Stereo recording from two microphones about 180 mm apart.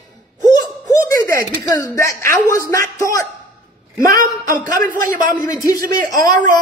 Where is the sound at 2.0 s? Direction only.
15° left (ahead or behind).